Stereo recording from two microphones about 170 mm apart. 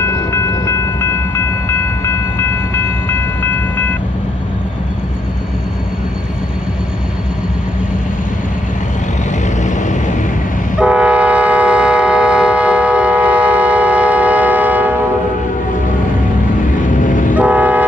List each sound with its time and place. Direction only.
0.0 s train: 15° left (ahead or behind)
10.8 s train: 5° right (ahead or behind)
16.9 s vehicle: 50° left (ahead or behind)
17.4 s vehicle: 10° right (ahead or behind)